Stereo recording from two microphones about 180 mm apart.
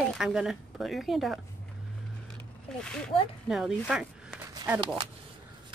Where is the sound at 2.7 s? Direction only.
5° left (ahead or behind).